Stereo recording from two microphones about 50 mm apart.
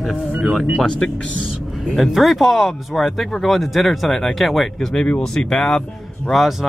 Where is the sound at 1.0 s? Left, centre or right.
Left.